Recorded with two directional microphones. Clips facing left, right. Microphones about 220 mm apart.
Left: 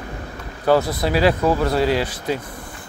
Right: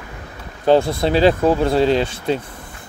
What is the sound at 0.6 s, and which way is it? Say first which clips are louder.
Speech: right 3 dB; 25° right (ahead or behind).